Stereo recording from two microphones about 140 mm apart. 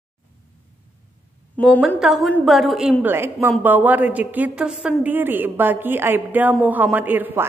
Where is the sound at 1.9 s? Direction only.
Centre (ahead or behind).